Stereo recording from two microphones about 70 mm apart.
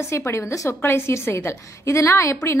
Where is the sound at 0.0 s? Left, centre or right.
Left.